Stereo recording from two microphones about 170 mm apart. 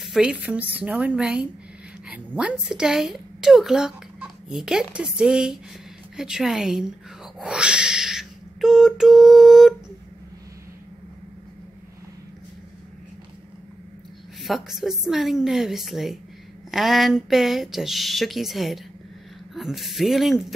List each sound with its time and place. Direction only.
0.0 s a woman's voice: 5° right (ahead or behind)
7.3 s a sound: 5° right (ahead or behind)
14.4 s speech: centre (ahead or behind)